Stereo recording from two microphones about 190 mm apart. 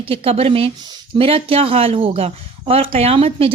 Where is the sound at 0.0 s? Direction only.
30° right (ahead or behind).